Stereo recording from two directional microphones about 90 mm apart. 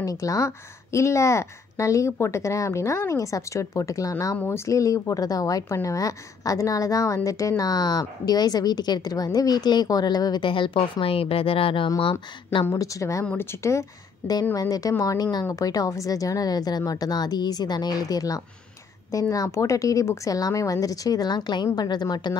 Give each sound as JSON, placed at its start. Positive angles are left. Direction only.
{"t": 0.0, "sound": "a woman's voice", "side_deg": 40}
{"t": 10.4, "sound": "speech", "side_deg": 70}
{"t": 12.7, "sound": "a woman's voice", "side_deg": 40}
{"t": 13.2, "sound": "a woman's voice", "side_deg": 20}